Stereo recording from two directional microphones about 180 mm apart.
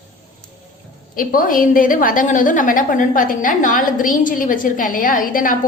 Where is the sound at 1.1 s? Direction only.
50° left (ahead or behind).